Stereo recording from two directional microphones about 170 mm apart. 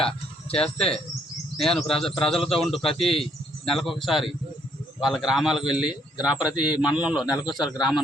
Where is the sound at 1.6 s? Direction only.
Centre (ahead or behind).